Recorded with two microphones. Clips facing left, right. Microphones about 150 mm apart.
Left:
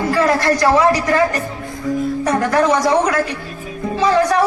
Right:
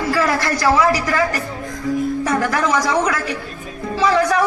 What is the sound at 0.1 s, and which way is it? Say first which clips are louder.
A woman's voice: left 4 dB; 30° left (ahead or behind).